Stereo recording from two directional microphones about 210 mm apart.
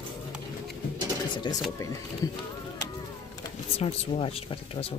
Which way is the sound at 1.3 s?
20° left (ahead or behind).